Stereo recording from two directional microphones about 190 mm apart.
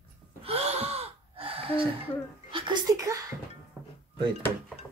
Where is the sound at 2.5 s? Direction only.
25° right (ahead or behind).